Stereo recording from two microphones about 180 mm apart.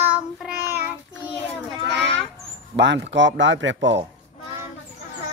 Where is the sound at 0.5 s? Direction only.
60° right (ahead or behind).